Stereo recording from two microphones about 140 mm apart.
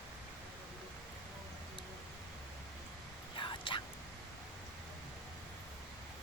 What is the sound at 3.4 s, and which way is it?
Whispering, 35° left (ahead or behind).